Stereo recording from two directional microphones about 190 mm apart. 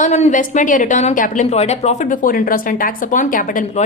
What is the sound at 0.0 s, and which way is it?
A woman's voice, 35° left (ahead or behind).